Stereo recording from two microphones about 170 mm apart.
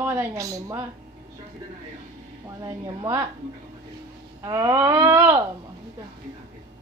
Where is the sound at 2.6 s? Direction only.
20° right (ahead or behind).